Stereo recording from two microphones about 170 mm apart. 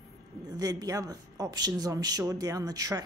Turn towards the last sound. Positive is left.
turn(degrees=-20)  # may be behind; listen again after turning